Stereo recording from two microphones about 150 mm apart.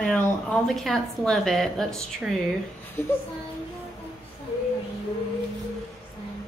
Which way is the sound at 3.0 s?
15° left (ahead or behind).